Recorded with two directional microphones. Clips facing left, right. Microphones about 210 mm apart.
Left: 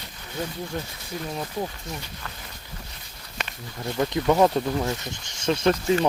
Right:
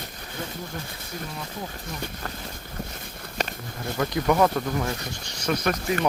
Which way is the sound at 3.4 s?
40° right (ahead or behind).